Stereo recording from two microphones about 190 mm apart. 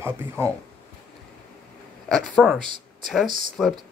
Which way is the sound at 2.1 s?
5° left (ahead or behind).